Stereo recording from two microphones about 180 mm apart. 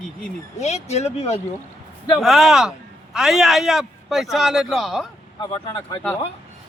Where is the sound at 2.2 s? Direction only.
Centre (ahead or behind).